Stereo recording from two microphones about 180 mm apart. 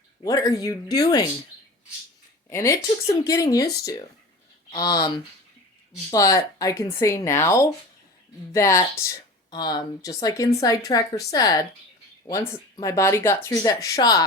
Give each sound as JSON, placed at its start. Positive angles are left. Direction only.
{"t": 0.2, "sound": "speech", "side_deg": 20}
{"t": 2.5, "sound": "speech", "side_deg": 15}